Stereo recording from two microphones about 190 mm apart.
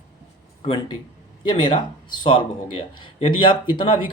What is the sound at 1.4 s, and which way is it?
Speech, 25° left (ahead or behind).